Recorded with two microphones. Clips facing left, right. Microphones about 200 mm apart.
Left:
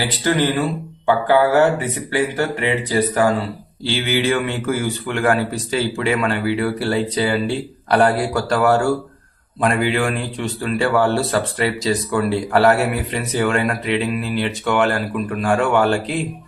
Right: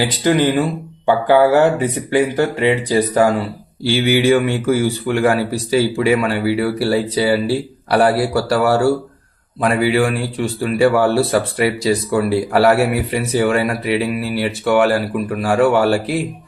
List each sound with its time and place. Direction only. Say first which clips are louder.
0.0 s a man's voice: right 4 dB; 15° right (ahead or behind)
1.8 s a man's voice: right 5 dB; 15° right (ahead or behind)